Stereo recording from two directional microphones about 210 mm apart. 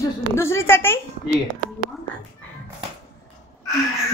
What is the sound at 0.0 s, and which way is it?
Speech, 10° left (ahead or behind).